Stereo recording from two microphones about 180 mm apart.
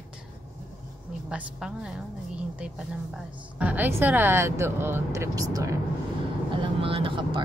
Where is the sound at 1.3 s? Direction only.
5° right (ahead or behind).